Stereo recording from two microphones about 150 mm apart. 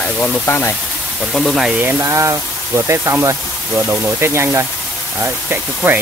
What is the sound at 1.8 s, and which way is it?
Speech, 20° right (ahead or behind).